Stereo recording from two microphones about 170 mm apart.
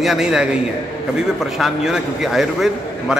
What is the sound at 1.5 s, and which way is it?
A man's voice, 5° right (ahead or behind).